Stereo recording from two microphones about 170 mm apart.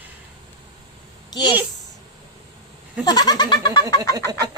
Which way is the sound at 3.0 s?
25° left (ahead or behind).